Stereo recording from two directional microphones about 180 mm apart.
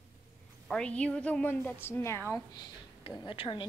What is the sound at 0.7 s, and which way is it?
A woman's voice, 5° left (ahead or behind).